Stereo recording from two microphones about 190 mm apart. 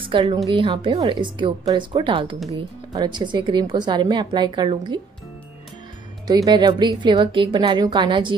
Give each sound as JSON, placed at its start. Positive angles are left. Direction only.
{"t": 0.0, "sound": "a woman's voice", "side_deg": -25}
{"t": 6.2, "sound": "a woman's voice", "side_deg": -20}